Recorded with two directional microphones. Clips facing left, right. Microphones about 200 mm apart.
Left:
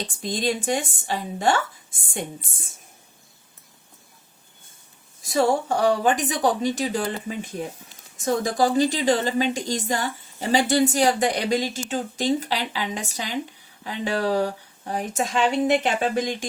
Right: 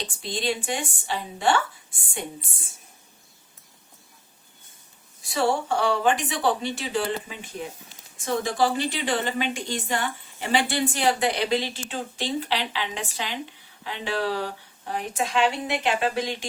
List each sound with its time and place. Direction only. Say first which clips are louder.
0.2 s speech: left 3 dB; 45° left (ahead or behind)
5.2 s a woman's voice: left 3 dB; 40° left (ahead or behind)